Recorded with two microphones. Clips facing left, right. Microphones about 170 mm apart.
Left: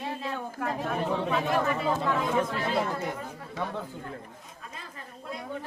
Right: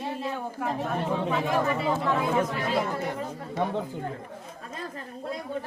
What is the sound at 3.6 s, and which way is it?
Speech, 20° right (ahead or behind).